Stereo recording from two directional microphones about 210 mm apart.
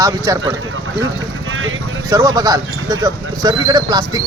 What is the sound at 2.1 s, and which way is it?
Speech, 15° right (ahead or behind).